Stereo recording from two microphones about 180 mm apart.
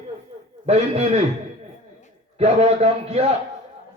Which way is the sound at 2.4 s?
35° right (ahead or behind).